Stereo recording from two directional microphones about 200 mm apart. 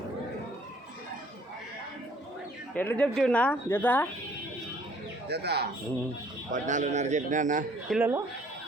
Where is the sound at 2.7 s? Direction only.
10° left (ahead or behind).